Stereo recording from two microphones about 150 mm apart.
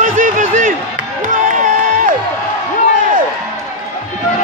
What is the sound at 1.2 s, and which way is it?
Music, 60° right (ahead or behind).